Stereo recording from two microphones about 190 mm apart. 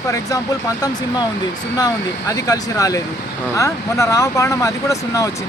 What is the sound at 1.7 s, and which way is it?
Speech, 20° left (ahead or behind).